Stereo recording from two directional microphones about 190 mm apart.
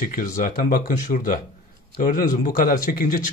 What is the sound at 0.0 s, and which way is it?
A man's voice, 45° left (ahead or behind).